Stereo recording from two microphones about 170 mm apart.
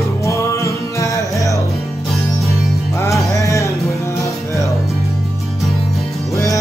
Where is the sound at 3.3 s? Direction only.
20° left (ahead or behind).